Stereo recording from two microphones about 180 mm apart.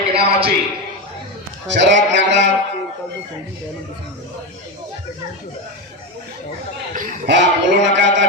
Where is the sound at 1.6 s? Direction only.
80° right.